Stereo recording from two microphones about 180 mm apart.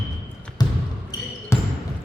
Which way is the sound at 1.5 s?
15° left (ahead or behind).